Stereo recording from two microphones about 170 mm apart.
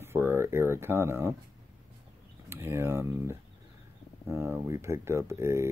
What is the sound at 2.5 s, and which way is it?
Speech, 15° right (ahead or behind).